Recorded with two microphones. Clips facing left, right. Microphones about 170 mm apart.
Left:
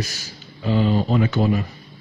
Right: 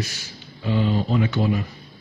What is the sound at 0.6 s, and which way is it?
Speech, 45° left (ahead or behind).